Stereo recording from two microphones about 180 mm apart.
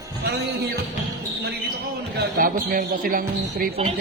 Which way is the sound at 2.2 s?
50° right (ahead or behind).